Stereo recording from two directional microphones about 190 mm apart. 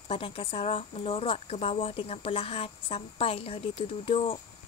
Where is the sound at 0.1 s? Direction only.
25° left (ahead or behind).